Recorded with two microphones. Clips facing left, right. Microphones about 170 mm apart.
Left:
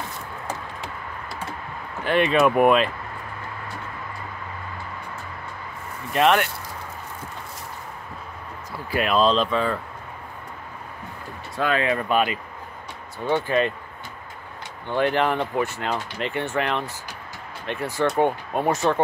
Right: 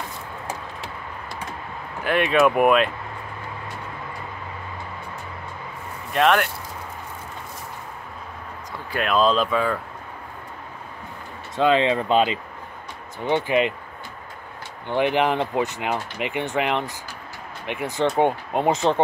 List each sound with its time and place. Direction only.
2.0 s speech: centre (ahead or behind)
6.1 s speech: centre (ahead or behind)
8.9 s speech: centre (ahead or behind)
11.5 s speech: 25° right (ahead or behind)
14.9 s speech: 15° right (ahead or behind)